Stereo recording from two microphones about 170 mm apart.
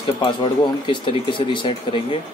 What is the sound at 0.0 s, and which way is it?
Speech, 30° left (ahead or behind).